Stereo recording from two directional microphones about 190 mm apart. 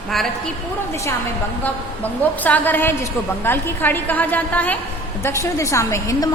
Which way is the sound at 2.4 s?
10° left (ahead or behind).